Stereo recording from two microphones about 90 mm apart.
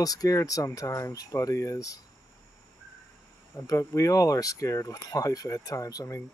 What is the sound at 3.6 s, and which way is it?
Speech, 35° left (ahead or behind).